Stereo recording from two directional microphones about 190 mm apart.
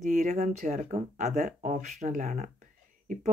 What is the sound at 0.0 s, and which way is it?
Speech, 40° right (ahead or behind).